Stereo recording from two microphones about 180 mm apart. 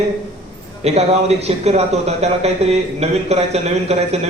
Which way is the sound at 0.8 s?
35° right (ahead or behind).